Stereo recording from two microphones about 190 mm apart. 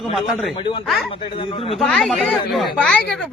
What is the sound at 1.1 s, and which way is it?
Speech, 30° left (ahead or behind).